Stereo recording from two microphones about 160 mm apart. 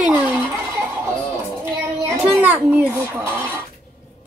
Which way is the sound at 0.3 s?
15° right (ahead or behind).